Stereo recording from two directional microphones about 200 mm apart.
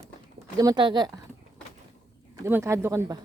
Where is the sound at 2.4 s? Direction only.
15° right (ahead or behind).